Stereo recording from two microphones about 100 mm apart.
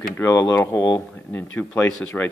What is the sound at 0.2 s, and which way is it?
Speech, 25° left (ahead or behind).